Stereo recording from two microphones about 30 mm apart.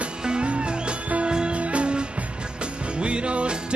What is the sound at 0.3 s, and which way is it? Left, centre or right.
Music, right.